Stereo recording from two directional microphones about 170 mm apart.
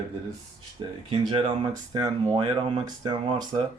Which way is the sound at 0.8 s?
25° right (ahead or behind).